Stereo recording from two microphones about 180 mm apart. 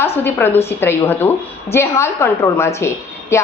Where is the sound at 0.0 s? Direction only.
10° left (ahead or behind).